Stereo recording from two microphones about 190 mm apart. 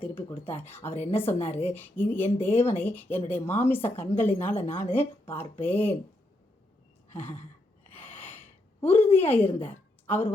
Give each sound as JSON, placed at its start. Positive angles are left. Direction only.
{"t": 0.3, "sound": "speech", "side_deg": 30}
{"t": 0.6, "sound": "speech", "side_deg": 10}
{"t": 4.6, "sound": "speech", "side_deg": 35}
{"t": 5.5, "sound": "speech", "side_deg": 10}
{"t": 7.1, "sound": "a sound", "side_deg": 10}
{"t": 7.9, "sound": "gasp", "side_deg": 10}
{"t": 9.1, "sound": "a woman's voice", "side_deg": 10}